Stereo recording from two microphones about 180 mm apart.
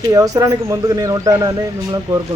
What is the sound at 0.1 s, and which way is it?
A man's voice, 20° right (ahead or behind).